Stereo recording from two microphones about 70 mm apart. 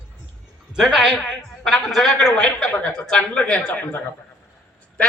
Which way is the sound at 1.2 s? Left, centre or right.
Centre.